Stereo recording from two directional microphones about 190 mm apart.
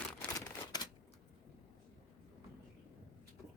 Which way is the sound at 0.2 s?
15° left (ahead or behind).